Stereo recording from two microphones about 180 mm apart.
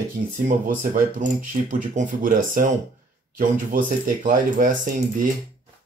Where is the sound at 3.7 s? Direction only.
50° right (ahead or behind).